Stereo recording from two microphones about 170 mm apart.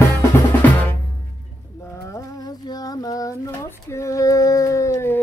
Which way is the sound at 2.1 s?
25° left (ahead or behind).